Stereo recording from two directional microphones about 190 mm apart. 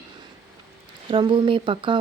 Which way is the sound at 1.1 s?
25° right (ahead or behind).